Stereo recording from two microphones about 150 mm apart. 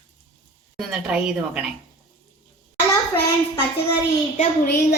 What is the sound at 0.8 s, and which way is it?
Speech, 5° right (ahead or behind).